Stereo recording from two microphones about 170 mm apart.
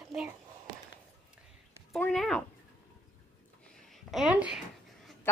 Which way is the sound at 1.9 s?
Centre (ahead or behind).